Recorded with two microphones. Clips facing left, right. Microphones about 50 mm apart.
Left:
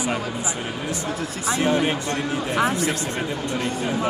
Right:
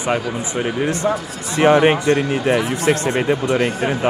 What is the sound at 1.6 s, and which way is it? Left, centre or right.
Speech, right.